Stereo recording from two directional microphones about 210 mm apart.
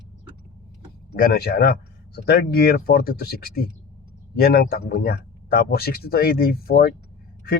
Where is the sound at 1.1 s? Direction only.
45° left (ahead or behind).